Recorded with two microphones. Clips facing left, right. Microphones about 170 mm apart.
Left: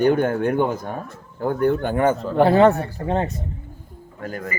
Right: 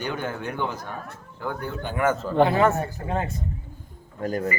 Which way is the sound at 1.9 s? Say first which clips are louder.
Left 3 dB; 30° left (ahead or behind).